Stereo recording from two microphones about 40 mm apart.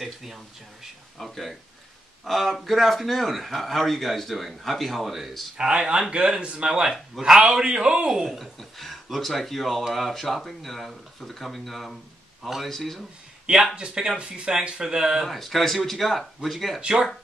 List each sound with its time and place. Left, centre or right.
0.0 s speech: centre
1.1 s speech: centre
5.6 s a man's voice: centre
8.4 s speech: centre
13.7 s speech: right
15.2 s speech: centre